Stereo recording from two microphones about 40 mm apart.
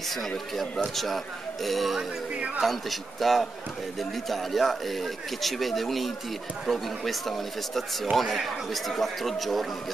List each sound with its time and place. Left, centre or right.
0.9 s speech: centre
2.3 s a sound: right
2.6 s speech: centre